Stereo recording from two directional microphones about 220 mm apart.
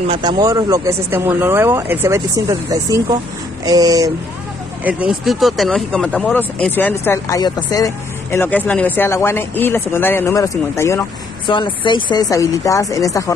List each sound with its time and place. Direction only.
0.0 s speech: 20° right (ahead or behind)
4.8 s speech: 5° right (ahead or behind); by 13.2 s 15° left (ahead or behind)